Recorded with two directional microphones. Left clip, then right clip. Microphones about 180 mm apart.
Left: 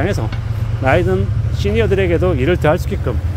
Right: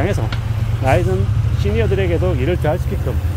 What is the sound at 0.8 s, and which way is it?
Speech, 30° left (ahead or behind).